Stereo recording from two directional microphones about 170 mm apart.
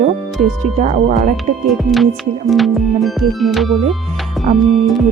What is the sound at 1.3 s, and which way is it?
Music, centre (ahead or behind).